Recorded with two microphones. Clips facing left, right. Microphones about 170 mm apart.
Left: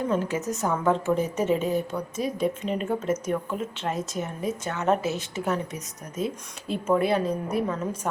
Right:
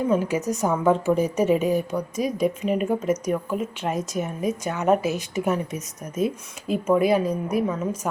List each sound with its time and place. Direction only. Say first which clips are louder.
0.1 s speech: right 4 dB; 10° right (ahead or behind)
6.7 s speech: right 4 dB; 10° right (ahead or behind)